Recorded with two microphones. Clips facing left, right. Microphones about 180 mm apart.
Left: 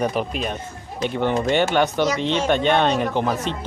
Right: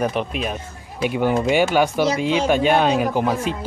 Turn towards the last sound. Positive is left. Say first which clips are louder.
# right 2 dB
turn(degrees=-5)  # may be behind; listen again after turning